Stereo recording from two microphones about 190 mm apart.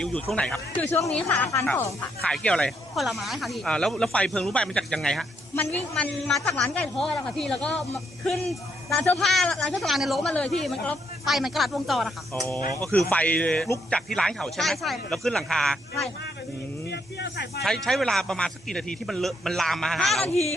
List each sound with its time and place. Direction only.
0.0 s speech: 5° left (ahead or behind)
16.9 s a sound: 60° left (ahead or behind)
17.6 s speech: centre (ahead or behind)